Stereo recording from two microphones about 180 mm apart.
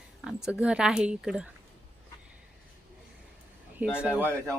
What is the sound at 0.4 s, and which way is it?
A woman's voice, 5° right (ahead or behind).